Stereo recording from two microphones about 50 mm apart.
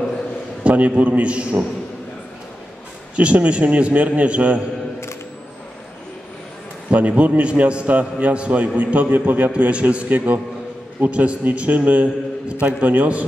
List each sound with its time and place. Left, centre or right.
0.7 s a man's voice: right
3.2 s a man's voice: right
6.9 s a man's voice: right